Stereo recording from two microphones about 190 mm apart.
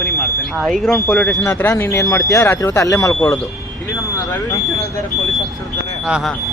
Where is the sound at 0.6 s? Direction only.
Centre (ahead or behind).